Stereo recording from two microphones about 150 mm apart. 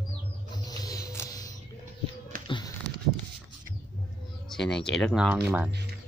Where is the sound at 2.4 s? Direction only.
30° left (ahead or behind).